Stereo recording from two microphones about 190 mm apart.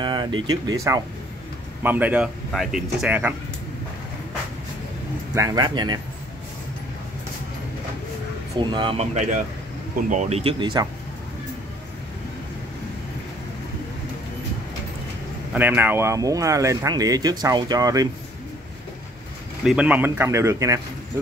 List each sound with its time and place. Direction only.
0.0 s a sound: 25° right (ahead or behind)
0.5 s speech: 20° right (ahead or behind)
5.3 s speech: 20° right (ahead or behind)
8.5 s speech: 25° right (ahead or behind)
15.5 s speech: 10° right (ahead or behind)
19.6 s speech: 5° right (ahead or behind)